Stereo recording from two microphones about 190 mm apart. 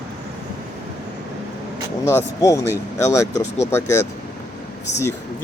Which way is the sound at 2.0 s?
15° left (ahead or behind).